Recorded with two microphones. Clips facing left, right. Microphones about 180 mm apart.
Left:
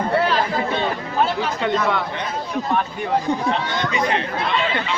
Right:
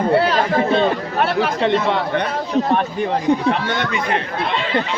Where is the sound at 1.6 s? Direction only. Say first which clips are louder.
Right 2 dB; 25° right (ahead or behind).